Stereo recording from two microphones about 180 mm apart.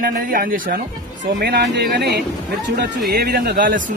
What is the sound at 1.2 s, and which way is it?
Speech, 65° right (ahead or behind).